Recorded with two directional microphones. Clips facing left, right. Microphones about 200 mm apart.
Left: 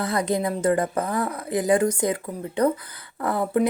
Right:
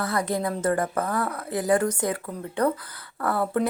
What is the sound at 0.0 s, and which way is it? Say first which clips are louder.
A woman's voice: left 2 dB; 20° left (ahead or behind).